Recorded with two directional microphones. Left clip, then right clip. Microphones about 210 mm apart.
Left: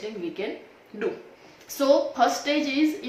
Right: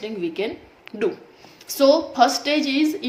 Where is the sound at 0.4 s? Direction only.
50° right (ahead or behind).